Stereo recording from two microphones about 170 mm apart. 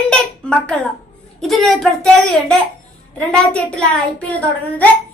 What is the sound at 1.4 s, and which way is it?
A child's voice, centre (ahead or behind).